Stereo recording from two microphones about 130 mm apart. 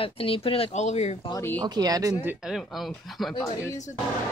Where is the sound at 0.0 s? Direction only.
45° left (ahead or behind); by 1.1 s 60° left (ahead or behind).